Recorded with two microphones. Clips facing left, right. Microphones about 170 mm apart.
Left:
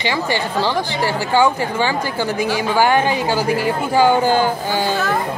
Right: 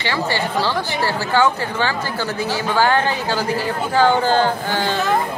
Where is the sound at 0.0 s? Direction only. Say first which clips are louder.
Left 1 dB; 15° left (ahead or behind).